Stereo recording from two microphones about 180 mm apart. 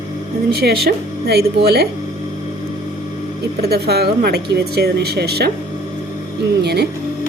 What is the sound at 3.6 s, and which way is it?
Speech, 60° right (ahead or behind).